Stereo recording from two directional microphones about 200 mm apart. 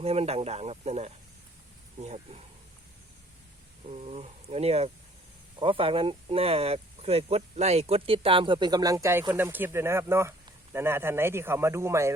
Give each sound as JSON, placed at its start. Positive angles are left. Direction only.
{"t": 0.0, "sound": "speech", "side_deg": -30}
{"t": 3.8, "sound": "speech", "side_deg": -35}